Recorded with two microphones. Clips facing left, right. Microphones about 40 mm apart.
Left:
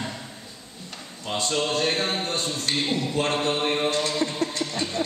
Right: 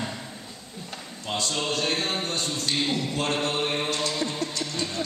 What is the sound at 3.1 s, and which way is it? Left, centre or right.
Mantra, left.